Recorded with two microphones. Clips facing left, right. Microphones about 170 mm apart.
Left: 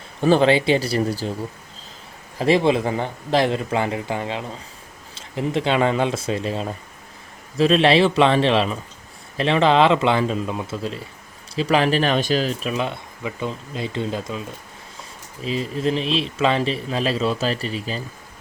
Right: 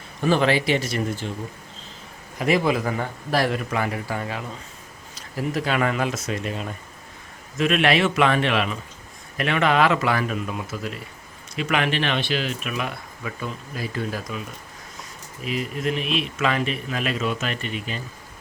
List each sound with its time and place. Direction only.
0.2 s speech: 30° left (ahead or behind)
2.4 s speech: 30° left (ahead or behind)
15.4 s speech: 30° left (ahead or behind)